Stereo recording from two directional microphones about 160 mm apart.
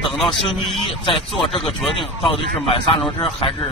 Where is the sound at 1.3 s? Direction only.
35° left (ahead or behind).